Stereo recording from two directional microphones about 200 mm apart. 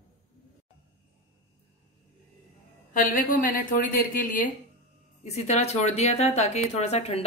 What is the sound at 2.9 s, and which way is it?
A woman's voice, 45° left (ahead or behind).